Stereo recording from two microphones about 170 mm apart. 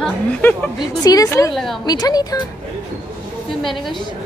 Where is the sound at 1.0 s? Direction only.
20° left (ahead or behind).